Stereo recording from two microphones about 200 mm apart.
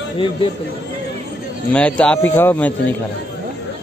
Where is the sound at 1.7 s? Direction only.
5° left (ahead or behind).